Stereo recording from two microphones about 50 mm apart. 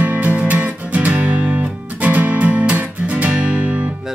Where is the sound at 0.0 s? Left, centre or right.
Right.